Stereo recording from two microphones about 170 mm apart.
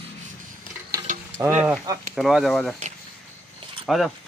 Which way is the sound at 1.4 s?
20° right (ahead or behind).